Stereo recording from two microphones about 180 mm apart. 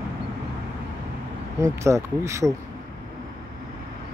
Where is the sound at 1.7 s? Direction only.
15° right (ahead or behind).